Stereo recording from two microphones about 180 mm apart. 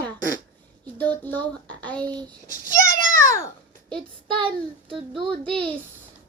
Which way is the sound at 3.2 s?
15° left (ahead or behind).